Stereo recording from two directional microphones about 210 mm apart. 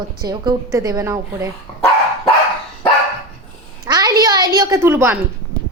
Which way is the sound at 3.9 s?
20° right (ahead or behind).